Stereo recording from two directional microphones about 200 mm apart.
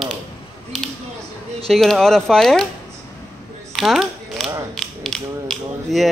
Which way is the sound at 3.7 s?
Centre (ahead or behind).